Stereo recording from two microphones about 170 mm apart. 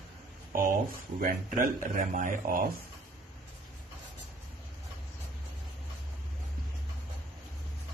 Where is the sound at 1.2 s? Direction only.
55° right (ahead or behind).